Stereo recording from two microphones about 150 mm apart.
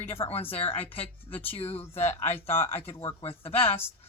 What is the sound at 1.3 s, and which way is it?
Speech, 10° left (ahead or behind).